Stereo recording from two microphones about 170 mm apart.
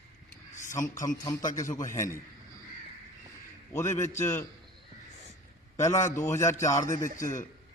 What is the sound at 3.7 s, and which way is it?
Speech, 15° left (ahead or behind).